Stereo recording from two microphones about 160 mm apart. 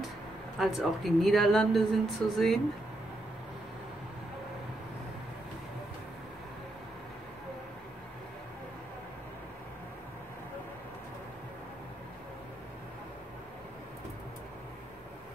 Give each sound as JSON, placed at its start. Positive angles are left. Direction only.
{"t": 0.6, "sound": "speech", "side_deg": 0}